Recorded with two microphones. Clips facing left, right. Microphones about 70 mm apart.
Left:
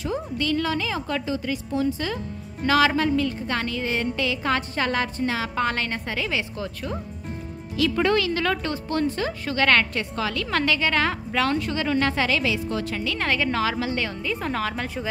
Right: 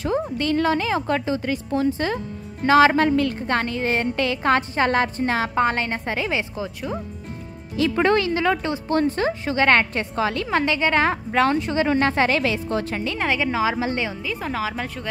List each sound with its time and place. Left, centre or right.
0.0 s a woman's voice: right
3.0 s a woman's voice: right
6.5 s a woman's voice: centre
7.7 s a woman's voice: right
8.4 s a woman's voice: centre
8.8 s a woman's voice: right
13.2 s a woman's voice: centre
14.2 s a woman's voice: centre